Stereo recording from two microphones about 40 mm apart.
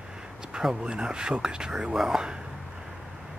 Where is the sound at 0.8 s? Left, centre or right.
Right.